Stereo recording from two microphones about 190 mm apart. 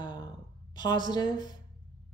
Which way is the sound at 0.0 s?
20° left (ahead or behind).